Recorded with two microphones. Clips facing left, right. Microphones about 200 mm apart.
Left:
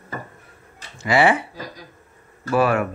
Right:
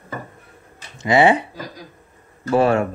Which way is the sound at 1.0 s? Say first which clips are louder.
Right 3 dB; 20° right (ahead or behind).